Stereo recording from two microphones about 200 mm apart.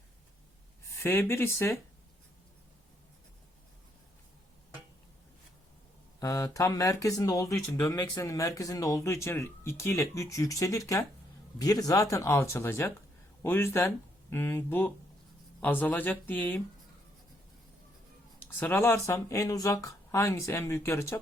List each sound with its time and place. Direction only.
1.0 s speech: 10° left (ahead or behind)
6.1 s speech: 20° left (ahead or behind)
18.3 s speech: 10° left (ahead or behind)